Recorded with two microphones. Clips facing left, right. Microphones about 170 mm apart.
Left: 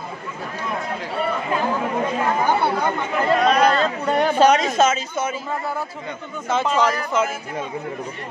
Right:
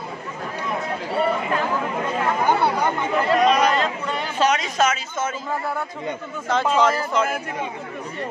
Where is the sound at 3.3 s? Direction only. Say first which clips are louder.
Left 1 dB; 10° right (ahead or behind).